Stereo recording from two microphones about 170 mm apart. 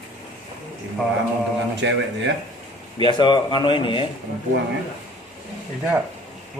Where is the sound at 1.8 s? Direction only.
90° right.